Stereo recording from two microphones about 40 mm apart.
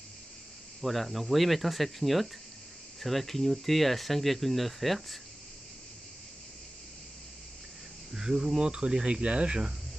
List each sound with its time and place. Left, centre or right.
0.7 s speech: centre
8.1 s speech: centre